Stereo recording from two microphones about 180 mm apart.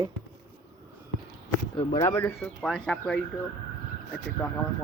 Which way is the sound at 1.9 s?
15° left (ahead or behind).